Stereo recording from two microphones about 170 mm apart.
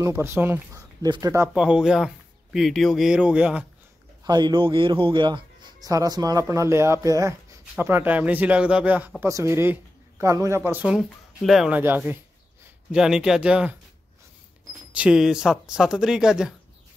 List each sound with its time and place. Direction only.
0.0 s speech: 15° right (ahead or behind)
1.5 s speech: 5° right (ahead or behind)
4.2 s speech: 25° right (ahead or behind); by 13.7 s 5° right (ahead or behind)
15.0 s speech: 5° right (ahead or behind)